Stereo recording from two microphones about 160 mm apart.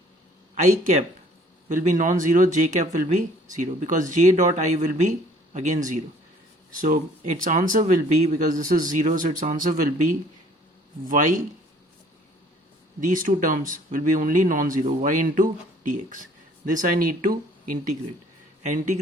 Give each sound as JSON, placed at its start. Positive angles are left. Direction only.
{"t": 0.5, "sound": "speech", "side_deg": -50}
{"t": 7.4, "sound": "speech", "side_deg": -55}
{"t": 13.1, "sound": "speech", "side_deg": -55}
{"t": 18.6, "sound": "speech", "side_deg": -50}